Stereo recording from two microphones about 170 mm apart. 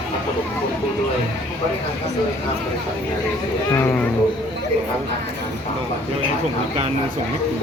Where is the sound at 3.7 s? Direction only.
15° left (ahead or behind).